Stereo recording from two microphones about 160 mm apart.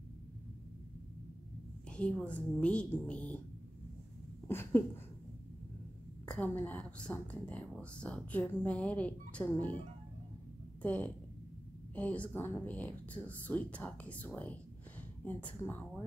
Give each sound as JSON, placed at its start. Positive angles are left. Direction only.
{"t": 1.9, "sound": "a woman's voice", "side_deg": 5}
{"t": 4.5, "sound": "a sound", "side_deg": 15}
{"t": 6.2, "sound": "a woman's voice", "side_deg": 5}
{"t": 10.8, "sound": "a woman's voice", "side_deg": 10}